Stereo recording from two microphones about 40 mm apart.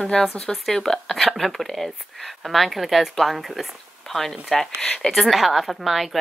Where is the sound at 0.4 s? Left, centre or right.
Centre.